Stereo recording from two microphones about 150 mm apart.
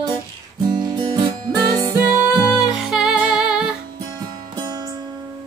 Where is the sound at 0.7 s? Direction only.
30° right (ahead or behind).